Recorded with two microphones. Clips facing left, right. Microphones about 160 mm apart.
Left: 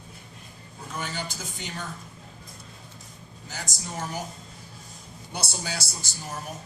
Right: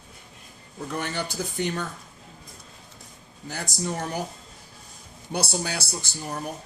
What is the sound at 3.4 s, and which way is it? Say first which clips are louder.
Speech: right 8 dB; 60° right (ahead or behind).